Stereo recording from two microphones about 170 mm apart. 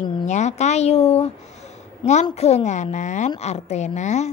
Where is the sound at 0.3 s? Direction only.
45° left (ahead or behind).